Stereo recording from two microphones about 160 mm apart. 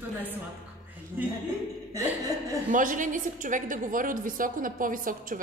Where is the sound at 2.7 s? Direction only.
55° right (ahead or behind).